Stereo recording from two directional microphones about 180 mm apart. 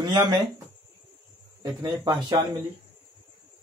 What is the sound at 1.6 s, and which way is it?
Speech, 20° right (ahead or behind).